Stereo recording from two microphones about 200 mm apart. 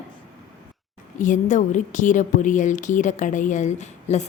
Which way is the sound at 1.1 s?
40° left (ahead or behind).